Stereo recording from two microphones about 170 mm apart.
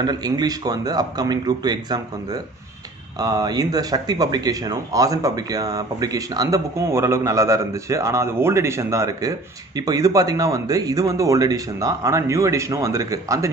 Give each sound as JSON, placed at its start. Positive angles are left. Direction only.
{"t": 0.0, "sound": "speech", "side_deg": -25}